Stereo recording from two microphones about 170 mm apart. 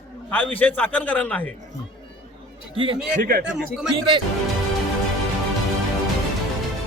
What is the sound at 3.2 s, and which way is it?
Speech, 60° right (ahead or behind).